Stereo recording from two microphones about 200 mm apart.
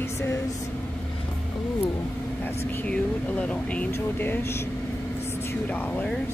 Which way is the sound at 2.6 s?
10° left (ahead or behind).